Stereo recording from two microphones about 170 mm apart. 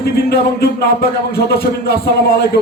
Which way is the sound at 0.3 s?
70° left (ahead or behind).